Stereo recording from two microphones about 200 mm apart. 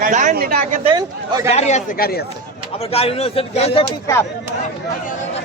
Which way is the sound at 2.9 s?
30° left (ahead or behind).